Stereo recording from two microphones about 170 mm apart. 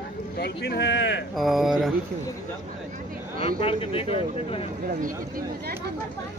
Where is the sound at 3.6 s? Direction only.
35° left (ahead or behind).